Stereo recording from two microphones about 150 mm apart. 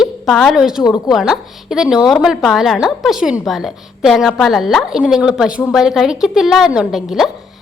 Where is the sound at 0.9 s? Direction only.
25° left (ahead or behind).